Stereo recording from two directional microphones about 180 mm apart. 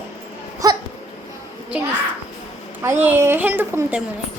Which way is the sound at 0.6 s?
20° right (ahead or behind).